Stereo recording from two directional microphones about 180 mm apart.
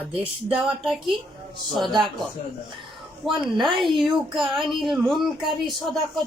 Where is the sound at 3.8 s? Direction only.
Centre (ahead or behind).